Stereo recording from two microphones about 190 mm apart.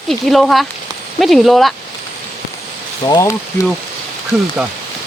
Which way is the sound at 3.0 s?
20° left (ahead or behind).